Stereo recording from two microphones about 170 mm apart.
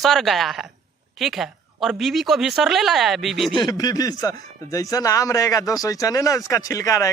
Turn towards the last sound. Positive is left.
turn(degrees=20)  # may be behind; listen again after turning